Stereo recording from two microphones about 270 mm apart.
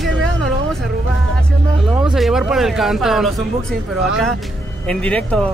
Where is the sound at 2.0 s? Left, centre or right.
Centre.